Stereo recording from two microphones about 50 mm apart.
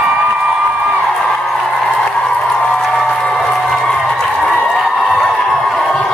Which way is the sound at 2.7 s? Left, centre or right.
Centre.